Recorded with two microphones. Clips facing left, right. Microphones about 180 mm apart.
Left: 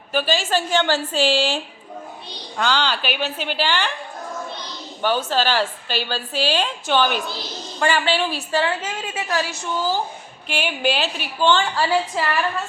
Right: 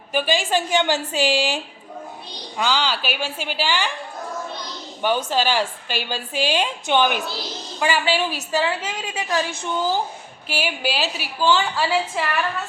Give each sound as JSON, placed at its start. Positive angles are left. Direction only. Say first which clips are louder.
{"t": 0.1, "sound": "a woman's voice", "louder": "even", "side_deg": -15}
{"t": 5.0, "sound": "a woman's voice", "louder": "even", "side_deg": -15}
{"t": 10.5, "sound": "a woman's voice", "louder": "left 2 dB", "side_deg": -5}